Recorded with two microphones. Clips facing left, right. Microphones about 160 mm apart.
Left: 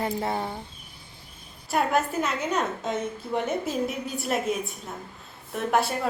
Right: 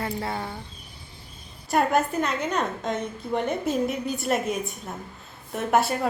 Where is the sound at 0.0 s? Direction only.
20° left (ahead or behind).